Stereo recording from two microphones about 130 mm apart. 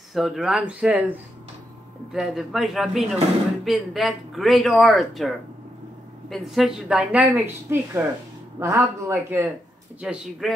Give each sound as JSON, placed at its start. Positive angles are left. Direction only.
{"t": 0.1, "sound": "speech", "side_deg": -5}
{"t": 2.1, "sound": "a woman's voice", "side_deg": 0}
{"t": 9.9, "sound": "a woman's voice", "side_deg": -10}